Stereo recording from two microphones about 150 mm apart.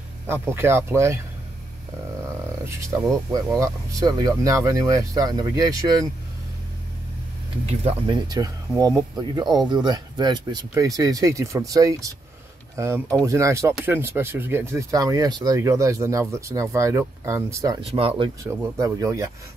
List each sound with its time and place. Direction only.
0.3 s speech: 15° right (ahead or behind)
3.5 s speech: 25° right (ahead or behind)
7.6 s speech: 45° right (ahead or behind)
8.3 s speech: 25° right (ahead or behind)
17.7 s speech: 35° right (ahead or behind)
18.4 s speech: 20° right (ahead or behind)